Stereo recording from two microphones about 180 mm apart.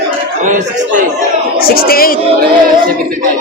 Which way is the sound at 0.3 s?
45° right (ahead or behind).